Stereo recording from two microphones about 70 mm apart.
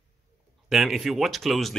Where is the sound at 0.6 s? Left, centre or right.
Centre.